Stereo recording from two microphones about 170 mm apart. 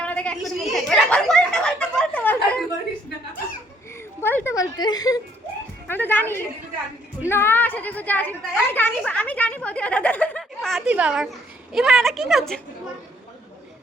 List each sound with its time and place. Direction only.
0.0 s a sound: 5° left (ahead or behind)
4.2 s a woman's voice: 10° left (ahead or behind)
5.9 s a woman's voice: 10° left (ahead or behind)